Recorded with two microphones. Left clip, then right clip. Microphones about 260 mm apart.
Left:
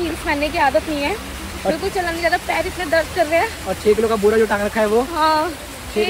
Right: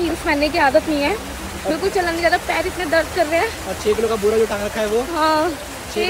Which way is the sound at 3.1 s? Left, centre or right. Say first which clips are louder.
Left 1 dB; centre.